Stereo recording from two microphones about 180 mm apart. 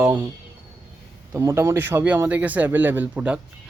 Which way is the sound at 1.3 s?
15° right (ahead or behind).